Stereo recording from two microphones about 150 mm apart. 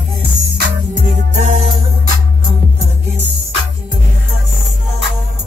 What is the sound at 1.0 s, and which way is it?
Music, 55° right (ahead or behind).